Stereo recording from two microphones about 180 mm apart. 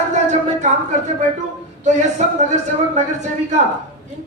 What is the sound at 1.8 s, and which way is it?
A man's voice, 40° right (ahead or behind).